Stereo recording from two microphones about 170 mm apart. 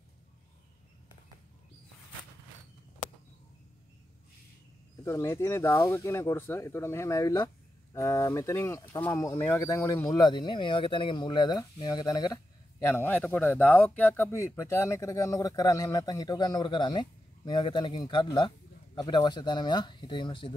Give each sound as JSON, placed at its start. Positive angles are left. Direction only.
{"t": 5.0, "sound": "speech", "side_deg": 15}